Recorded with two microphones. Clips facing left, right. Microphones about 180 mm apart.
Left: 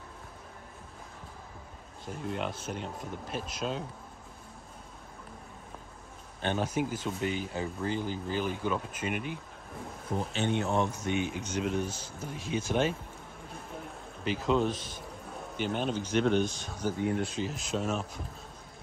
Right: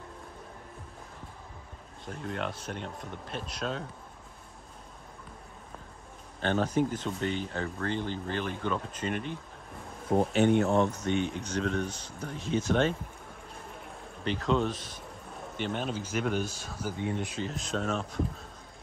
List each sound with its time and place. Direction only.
2.0 s speech: 5° left (ahead or behind)
6.4 s speech: 15° left (ahead or behind)
10.3 s speech: 25° left (ahead or behind)
10.9 s speech: 10° left (ahead or behind)
14.2 s speech: 5° left (ahead or behind)